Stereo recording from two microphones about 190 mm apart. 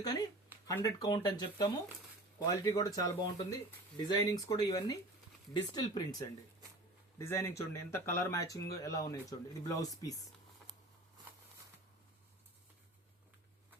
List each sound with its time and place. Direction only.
0.0 s speech: 20° left (ahead or behind)